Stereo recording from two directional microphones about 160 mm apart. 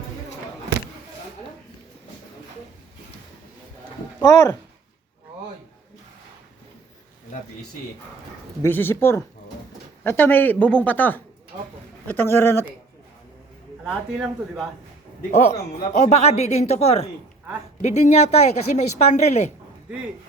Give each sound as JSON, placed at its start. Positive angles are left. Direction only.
{"t": 4.2, "sound": "speech", "side_deg": 20}
{"t": 8.6, "sound": "speech", "side_deg": 15}
{"t": 13.8, "sound": "speech", "side_deg": -5}
{"t": 15.3, "sound": "speech", "side_deg": 50}